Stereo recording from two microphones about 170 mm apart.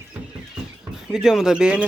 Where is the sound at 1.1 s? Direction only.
Centre (ahead or behind).